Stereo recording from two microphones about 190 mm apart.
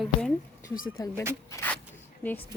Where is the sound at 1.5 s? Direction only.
10° left (ahead or behind).